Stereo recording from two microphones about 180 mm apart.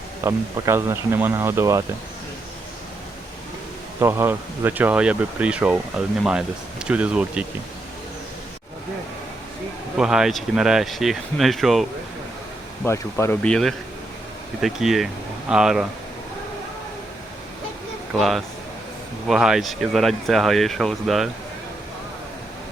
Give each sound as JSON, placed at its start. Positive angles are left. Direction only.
{"t": 0.2, "sound": "speech", "side_deg": -15}
{"t": 4.0, "sound": "speech", "side_deg": -15}
{"t": 10.0, "sound": "speech", "side_deg": -5}
{"t": 12.8, "sound": "speech", "side_deg": 15}
{"t": 18.1, "sound": "speech", "side_deg": 0}